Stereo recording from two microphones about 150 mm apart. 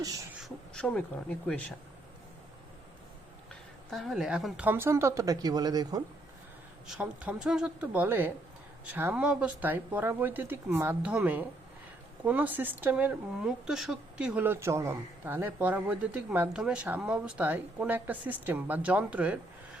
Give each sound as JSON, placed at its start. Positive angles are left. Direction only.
{"t": 0.3, "sound": "speech", "side_deg": 5}
{"t": 3.9, "sound": "a woman's voice", "side_deg": 0}
{"t": 6.8, "sound": "a woman's voice", "side_deg": -5}